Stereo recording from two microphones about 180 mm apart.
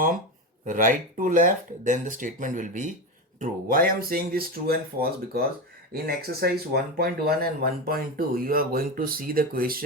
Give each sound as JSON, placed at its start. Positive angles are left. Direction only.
{"t": 0.6, "sound": "speech", "side_deg": -45}